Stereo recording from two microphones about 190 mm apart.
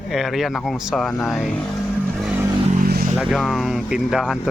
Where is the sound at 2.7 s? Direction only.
50° right (ahead or behind).